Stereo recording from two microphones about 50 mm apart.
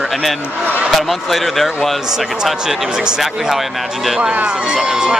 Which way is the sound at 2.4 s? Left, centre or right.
Centre.